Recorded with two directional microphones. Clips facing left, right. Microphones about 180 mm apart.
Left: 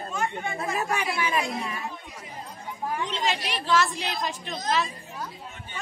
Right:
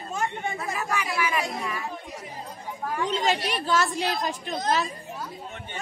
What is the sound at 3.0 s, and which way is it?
A woman's voice, 40° right (ahead or behind).